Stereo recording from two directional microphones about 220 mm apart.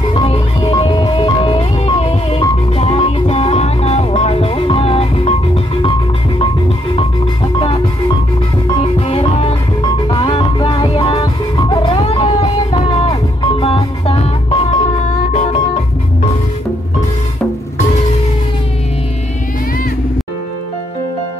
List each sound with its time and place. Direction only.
0.1 s music: 25° left (ahead or behind)
7.0 s music: 25° left (ahead or behind)